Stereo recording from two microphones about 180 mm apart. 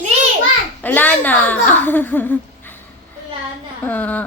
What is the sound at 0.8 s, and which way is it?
Speech, 10° left (ahead or behind).